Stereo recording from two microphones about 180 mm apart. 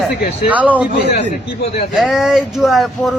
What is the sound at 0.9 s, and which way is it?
Speech, 70° left (ahead or behind).